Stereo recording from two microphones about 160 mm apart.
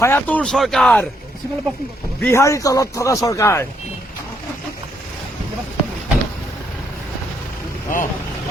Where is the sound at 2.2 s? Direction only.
20° left (ahead or behind).